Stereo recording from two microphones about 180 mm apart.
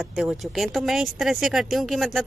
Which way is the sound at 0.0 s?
Centre (ahead or behind).